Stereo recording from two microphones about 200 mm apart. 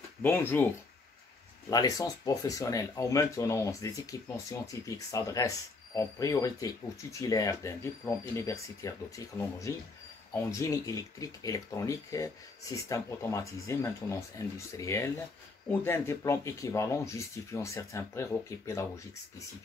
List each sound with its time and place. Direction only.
0.2 s speech: 10° left (ahead or behind)
1.7 s speech: 20° left (ahead or behind)